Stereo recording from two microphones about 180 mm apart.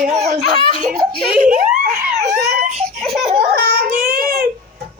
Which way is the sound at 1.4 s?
45° right (ahead or behind).